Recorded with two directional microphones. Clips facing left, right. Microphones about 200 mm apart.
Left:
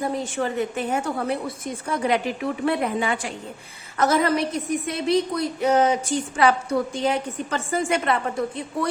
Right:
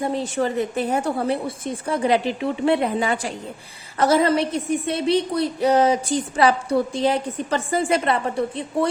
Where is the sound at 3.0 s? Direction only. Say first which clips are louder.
Right 2 dB; 40° right (ahead or behind).